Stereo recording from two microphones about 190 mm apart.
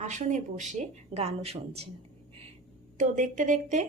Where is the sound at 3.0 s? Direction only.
40° right (ahead or behind).